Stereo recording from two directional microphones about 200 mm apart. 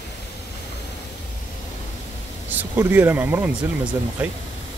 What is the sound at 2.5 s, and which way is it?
Speech, 10° right (ahead or behind).